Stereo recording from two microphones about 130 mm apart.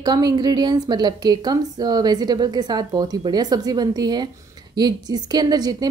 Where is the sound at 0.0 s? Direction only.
30° right (ahead or behind).